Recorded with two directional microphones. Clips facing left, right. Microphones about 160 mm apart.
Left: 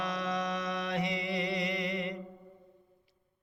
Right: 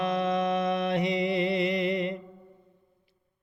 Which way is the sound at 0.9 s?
20° right (ahead or behind).